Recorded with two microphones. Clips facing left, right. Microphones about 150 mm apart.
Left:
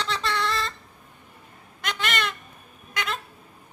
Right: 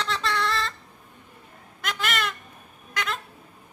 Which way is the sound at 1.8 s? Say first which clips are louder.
Even; centre (ahead or behind).